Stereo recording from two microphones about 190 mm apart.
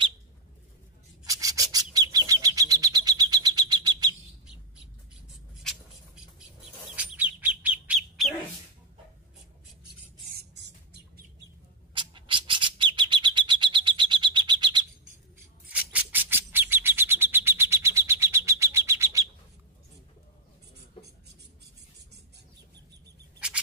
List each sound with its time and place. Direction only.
1.2 s rub: 20° right (ahead or behind)
2.0 s bird: 20° right (ahead or behind)
5.6 s a sound: centre (ahead or behind)
7.0 s bird: 10° right (ahead or behind)
10.3 s music: 60° right (ahead or behind)
11.9 s bird: 25° right (ahead or behind)
15.7 s bird: 5° right (ahead or behind)